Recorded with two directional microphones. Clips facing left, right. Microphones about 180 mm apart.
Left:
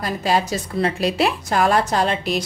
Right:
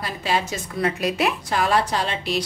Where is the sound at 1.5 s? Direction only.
50° left (ahead or behind).